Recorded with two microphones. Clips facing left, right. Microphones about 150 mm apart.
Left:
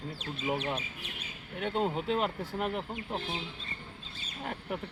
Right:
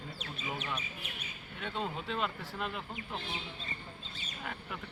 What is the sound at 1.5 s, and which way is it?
Speech, 50° left (ahead or behind).